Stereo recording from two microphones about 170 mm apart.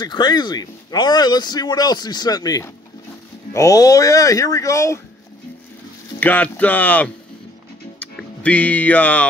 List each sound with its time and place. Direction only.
0.0 s speech: 25° left (ahead or behind)
6.1 s speech: 10° left (ahead or behind)